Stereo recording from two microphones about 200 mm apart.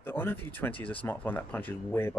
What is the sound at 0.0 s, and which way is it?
Speech, 10° left (ahead or behind).